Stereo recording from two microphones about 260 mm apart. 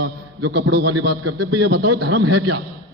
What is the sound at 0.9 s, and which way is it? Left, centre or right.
A man's voice, right.